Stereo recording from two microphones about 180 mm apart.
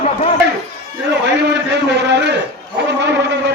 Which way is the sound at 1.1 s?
75° right (ahead or behind).